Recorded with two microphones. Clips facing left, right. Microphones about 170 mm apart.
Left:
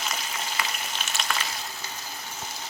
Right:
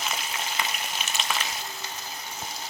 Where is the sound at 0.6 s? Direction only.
20° right (ahead or behind).